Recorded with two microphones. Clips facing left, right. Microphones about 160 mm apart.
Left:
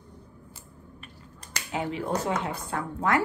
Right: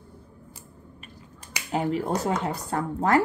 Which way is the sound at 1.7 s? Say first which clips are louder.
Right 4 dB; 40° right (ahead or behind).